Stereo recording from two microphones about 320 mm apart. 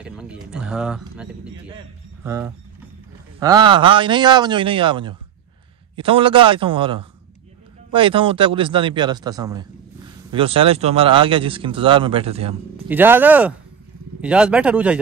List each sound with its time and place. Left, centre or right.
0.0 s a man's voice: centre
12.8 s speech: centre